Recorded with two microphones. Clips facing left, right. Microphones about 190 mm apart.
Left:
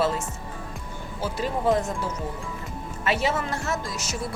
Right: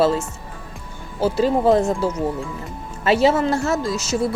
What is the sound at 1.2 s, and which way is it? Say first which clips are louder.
Speech: right 10 dB; 30° right (ahead or behind).